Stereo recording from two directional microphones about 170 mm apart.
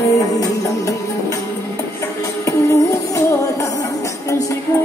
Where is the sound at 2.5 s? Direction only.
15° left (ahead or behind).